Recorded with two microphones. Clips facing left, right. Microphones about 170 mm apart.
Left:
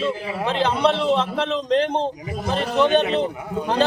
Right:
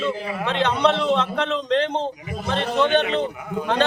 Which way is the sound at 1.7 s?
35° left (ahead or behind).